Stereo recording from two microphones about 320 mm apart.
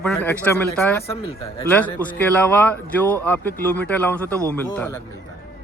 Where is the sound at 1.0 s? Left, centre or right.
Centre.